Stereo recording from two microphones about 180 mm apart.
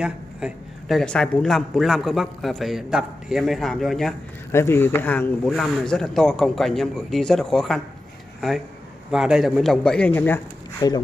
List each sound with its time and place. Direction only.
0.0 s speech: centre (ahead or behind)
4.5 s speech: 15° left (ahead or behind)
10.8 s speech: 20° left (ahead or behind)